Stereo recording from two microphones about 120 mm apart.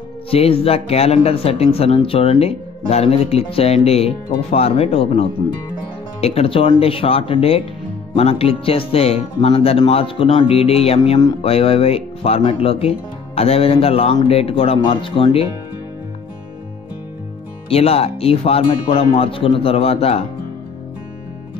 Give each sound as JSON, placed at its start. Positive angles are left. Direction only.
{"t": 0.3, "sound": "speech", "side_deg": 55}
{"t": 17.6, "sound": "speech", "side_deg": 55}